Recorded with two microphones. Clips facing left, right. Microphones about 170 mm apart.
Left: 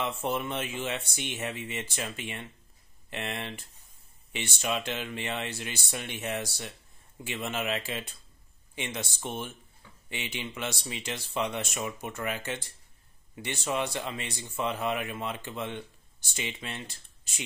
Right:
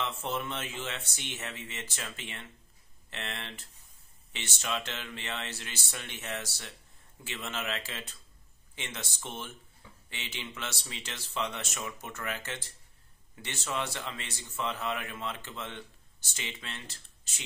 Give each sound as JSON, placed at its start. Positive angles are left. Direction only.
{"t": 0.0, "sound": "speech", "side_deg": 15}